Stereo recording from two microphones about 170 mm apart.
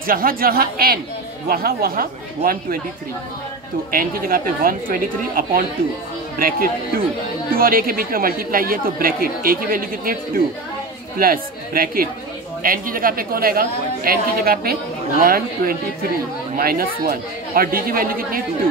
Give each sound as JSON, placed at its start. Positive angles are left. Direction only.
{"t": 0.0, "sound": "speech", "side_deg": -55}
{"t": 3.9, "sound": "speech", "side_deg": -55}